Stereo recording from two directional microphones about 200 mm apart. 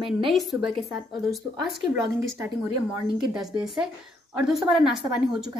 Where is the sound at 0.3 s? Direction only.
Centre (ahead or behind).